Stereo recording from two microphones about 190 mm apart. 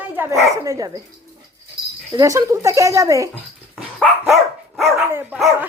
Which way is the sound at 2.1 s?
15° right (ahead or behind).